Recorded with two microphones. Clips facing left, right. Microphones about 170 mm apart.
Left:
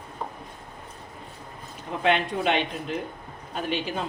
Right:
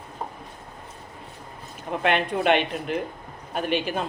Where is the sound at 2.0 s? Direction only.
55° right (ahead or behind).